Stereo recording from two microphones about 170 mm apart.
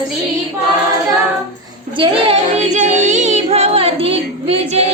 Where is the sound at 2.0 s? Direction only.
35° right (ahead or behind).